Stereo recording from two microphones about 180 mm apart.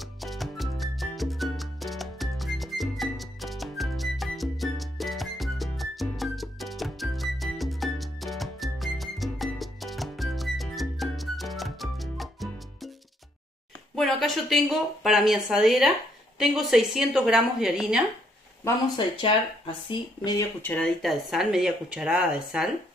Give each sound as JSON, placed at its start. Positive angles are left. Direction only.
{"t": 0.0, "sound": "music", "side_deg": 0}
{"t": 13.9, "sound": "speech", "side_deg": 0}
{"t": 20.2, "sound": "speech", "side_deg": 20}
{"t": 20.7, "sound": "speech", "side_deg": 0}